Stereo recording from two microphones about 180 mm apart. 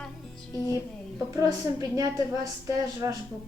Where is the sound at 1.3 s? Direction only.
20° right (ahead or behind).